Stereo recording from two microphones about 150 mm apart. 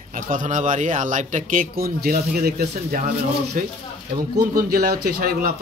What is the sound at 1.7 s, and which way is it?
Speech, 85° right.